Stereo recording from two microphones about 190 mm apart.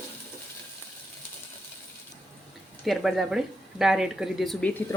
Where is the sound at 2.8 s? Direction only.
Centre (ahead or behind).